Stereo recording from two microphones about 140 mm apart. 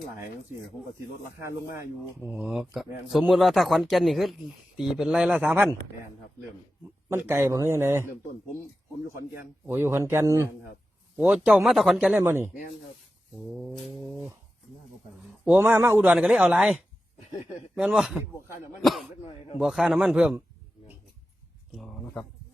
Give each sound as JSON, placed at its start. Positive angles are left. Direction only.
{"t": 1.4, "sound": "speech", "side_deg": -20}
{"t": 2.2, "sound": "speech", "side_deg": -5}
{"t": 7.1, "sound": "speech", "side_deg": -15}
{"t": 9.3, "sound": "speech", "side_deg": -15}
{"t": 11.2, "sound": "speech", "side_deg": -5}
{"t": 11.9, "sound": "speech", "side_deg": -10}
{"t": 13.5, "sound": "speech", "side_deg": -5}
{"t": 15.4, "sound": "speech", "side_deg": -15}
{"t": 21.8, "sound": "speech", "side_deg": 5}